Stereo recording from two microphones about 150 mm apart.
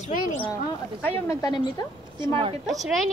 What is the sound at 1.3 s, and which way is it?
Speech, 25° left (ahead or behind).